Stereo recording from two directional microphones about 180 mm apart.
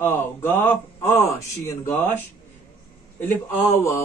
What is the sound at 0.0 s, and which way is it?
Speech, 10° left (ahead or behind).